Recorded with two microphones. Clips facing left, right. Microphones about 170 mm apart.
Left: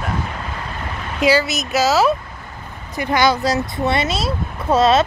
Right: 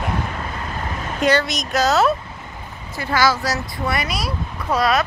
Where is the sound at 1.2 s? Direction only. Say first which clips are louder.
Left 2 dB; 5° left (ahead or behind).